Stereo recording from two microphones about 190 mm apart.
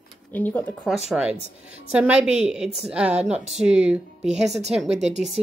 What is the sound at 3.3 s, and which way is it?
Speech, 35° right (ahead or behind).